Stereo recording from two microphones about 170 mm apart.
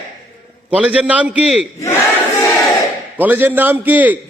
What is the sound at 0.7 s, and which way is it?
Speech, 10° right (ahead or behind).